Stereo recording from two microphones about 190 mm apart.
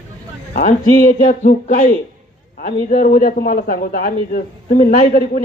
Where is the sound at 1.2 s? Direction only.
45° left (ahead or behind).